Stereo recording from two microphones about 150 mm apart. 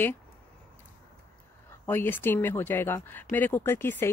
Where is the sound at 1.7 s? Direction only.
15° left (ahead or behind).